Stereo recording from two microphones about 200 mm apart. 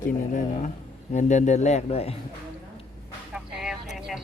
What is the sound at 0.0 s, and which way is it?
A man's voice, 40° left (ahead or behind).